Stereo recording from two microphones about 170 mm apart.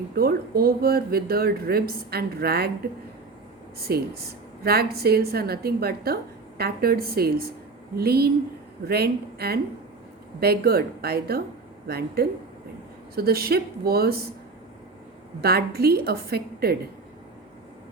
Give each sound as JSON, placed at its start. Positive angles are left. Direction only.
{"t": 0.2, "sound": "speech", "side_deg": -65}
{"t": 3.8, "sound": "a woman's voice", "side_deg": -65}
{"t": 15.4, "sound": "a woman's voice", "side_deg": -65}